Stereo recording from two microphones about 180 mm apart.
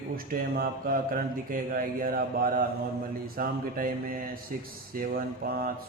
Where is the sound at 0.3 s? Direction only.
55° right (ahead or behind).